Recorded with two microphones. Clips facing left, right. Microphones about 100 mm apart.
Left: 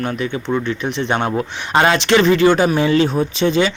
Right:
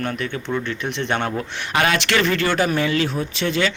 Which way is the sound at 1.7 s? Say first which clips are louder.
Left 6 dB; 25° left (ahead or behind).